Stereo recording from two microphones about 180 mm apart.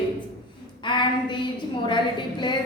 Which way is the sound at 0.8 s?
25° left (ahead or behind).